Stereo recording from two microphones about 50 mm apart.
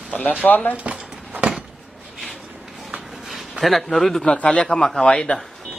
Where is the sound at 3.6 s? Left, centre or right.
Centre.